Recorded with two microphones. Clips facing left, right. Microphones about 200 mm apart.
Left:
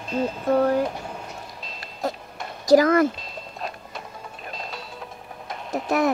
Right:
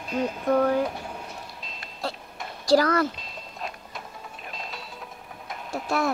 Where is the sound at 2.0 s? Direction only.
20° left (ahead or behind).